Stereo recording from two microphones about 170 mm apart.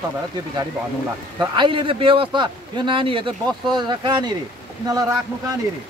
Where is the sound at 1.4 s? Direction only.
30° right (ahead or behind).